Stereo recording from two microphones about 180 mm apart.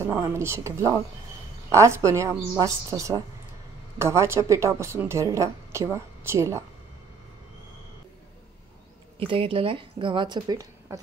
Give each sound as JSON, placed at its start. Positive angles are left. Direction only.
{"t": 0.0, "sound": "a woman's voice", "side_deg": -15}
{"t": 9.2, "sound": "speech", "side_deg": -30}